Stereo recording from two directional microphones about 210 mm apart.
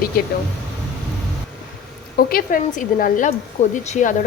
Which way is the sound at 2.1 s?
45° left (ahead or behind).